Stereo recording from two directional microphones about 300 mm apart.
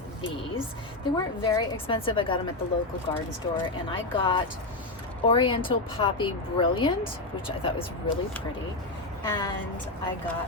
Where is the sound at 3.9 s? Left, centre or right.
Centre.